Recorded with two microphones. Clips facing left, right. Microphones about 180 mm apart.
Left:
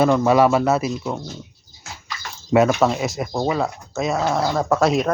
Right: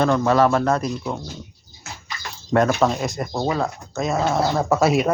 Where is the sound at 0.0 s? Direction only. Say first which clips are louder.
Left 2 dB; 10° left (ahead or behind).